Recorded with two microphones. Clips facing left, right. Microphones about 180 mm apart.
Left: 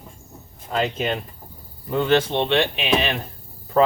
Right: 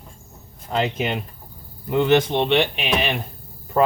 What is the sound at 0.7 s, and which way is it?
Speech, 15° right (ahead or behind).